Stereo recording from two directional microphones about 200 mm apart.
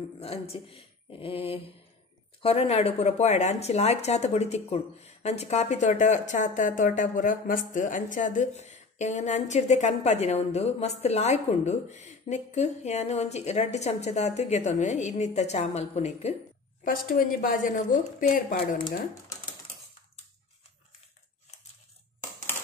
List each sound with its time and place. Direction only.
0.2 s speech: 30° left (ahead or behind)
16.8 s a woman's voice: 45° left (ahead or behind)
18.8 s speech: 25° left (ahead or behind)